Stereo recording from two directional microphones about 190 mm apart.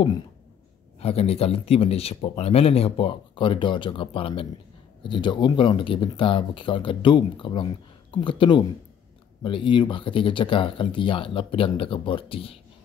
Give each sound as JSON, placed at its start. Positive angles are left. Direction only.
{"t": 0.9, "sound": "speech", "side_deg": 30}